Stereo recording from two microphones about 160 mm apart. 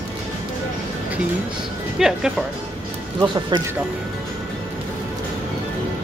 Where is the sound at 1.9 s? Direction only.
5° right (ahead or behind).